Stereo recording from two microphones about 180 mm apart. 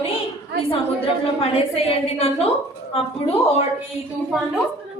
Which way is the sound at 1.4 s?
35° left (ahead or behind).